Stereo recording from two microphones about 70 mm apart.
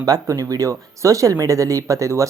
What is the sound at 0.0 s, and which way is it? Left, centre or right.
Speech, right.